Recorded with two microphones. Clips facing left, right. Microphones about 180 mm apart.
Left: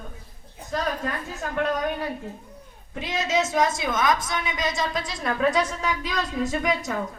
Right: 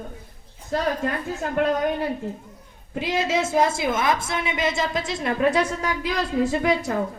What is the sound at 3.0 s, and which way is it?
A woman's voice, 30° right (ahead or behind).